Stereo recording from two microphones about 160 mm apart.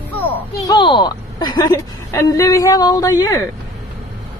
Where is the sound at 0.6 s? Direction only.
25° left (ahead or behind).